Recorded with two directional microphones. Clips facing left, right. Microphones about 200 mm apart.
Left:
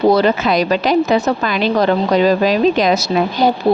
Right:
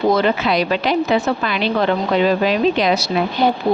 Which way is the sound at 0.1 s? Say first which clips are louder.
Left 3 dB; 40° left (ahead or behind).